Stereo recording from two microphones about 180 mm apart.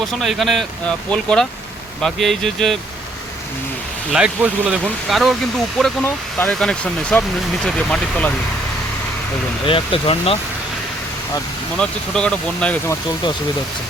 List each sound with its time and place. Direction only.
0.0 s speech: centre (ahead or behind)
4.1 s speech: 5° right (ahead or behind)
9.6 s speech: 30° left (ahead or behind)
11.8 s speech: 5° left (ahead or behind)